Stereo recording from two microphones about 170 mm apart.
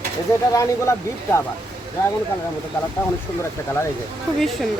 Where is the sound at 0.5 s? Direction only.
15° left (ahead or behind).